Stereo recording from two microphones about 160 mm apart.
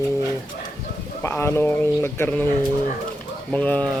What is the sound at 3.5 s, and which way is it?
Speech, 5° left (ahead or behind).